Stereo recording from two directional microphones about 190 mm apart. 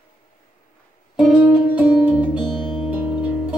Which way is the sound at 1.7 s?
10° right (ahead or behind).